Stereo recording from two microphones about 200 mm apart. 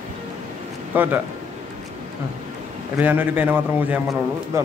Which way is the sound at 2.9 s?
10° right (ahead or behind).